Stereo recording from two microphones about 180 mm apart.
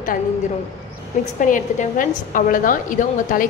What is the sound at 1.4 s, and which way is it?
A woman's voice, 45° left (ahead or behind).